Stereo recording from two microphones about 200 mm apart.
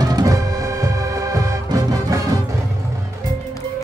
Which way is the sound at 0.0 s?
20° right (ahead or behind).